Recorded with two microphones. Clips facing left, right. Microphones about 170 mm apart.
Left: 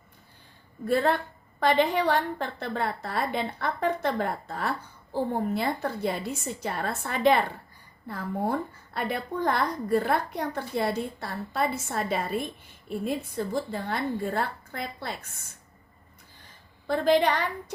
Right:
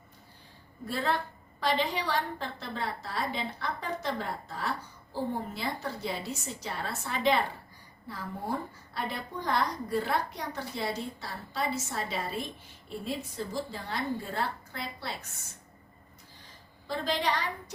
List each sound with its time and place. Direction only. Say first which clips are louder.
0.9 s a woman's voice: left 7 dB; 55° left (ahead or behind)
16.8 s a woman's voice: left 9 dB; 55° left (ahead or behind)